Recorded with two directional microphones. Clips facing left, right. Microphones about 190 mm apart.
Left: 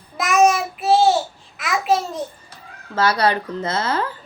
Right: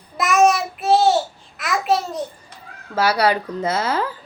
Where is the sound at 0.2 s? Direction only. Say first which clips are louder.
Even; centre (ahead or behind).